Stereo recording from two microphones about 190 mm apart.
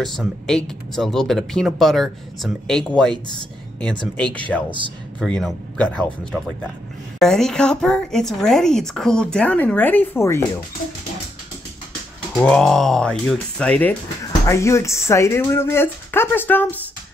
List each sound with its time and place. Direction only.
0.0 s speech: centre (ahead or behind)
4.2 s speech: 5° left (ahead or behind)
12.4 s speech: 5° left (ahead or behind)